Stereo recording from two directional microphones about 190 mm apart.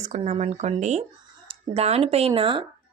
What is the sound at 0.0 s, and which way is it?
Speech, 35° right (ahead or behind).